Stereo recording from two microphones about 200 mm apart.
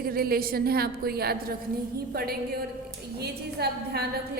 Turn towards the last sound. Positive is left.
turn(degrees=-55)  # may be behind; listen again after turning